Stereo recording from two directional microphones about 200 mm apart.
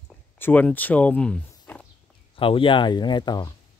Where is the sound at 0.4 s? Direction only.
10° left (ahead or behind).